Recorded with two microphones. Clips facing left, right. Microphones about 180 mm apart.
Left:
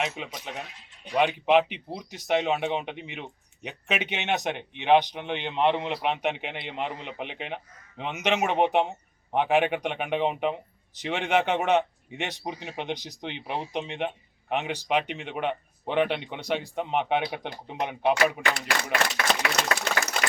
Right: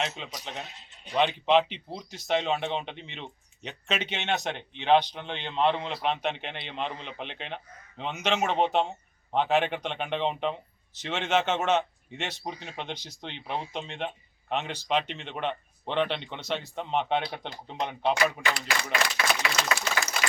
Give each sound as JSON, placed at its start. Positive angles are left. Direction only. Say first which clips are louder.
{"t": 0.2, "sound": "speech", "louder": "left 4 dB", "side_deg": 10}
{"t": 0.5, "sound": "speech", "louder": "left 1 dB", "side_deg": -25}
{"t": 1.2, "sound": "speech", "louder": "left 1 dB", "side_deg": 10}
{"t": 18.8, "sound": "speech", "louder": "left 2 dB", "side_deg": 50}